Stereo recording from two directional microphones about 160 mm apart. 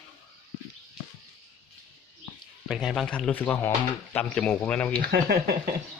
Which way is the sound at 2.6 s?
Centre (ahead or behind).